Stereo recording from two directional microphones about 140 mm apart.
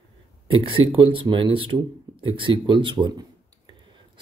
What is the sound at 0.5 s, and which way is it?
Speech, 40° right (ahead or behind).